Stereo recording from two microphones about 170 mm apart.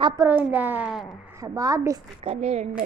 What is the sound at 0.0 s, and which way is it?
Speech, 20° right (ahead or behind).